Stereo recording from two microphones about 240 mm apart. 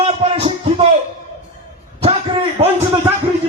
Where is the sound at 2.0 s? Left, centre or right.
Right.